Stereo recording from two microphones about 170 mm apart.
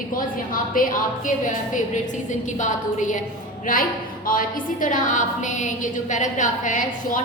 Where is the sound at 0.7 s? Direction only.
55° left (ahead or behind).